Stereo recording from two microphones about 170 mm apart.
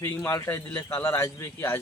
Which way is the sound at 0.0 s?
15° left (ahead or behind).